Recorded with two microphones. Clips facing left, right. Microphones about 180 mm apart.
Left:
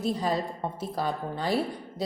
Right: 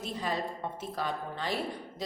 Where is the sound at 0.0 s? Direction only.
40° left (ahead or behind).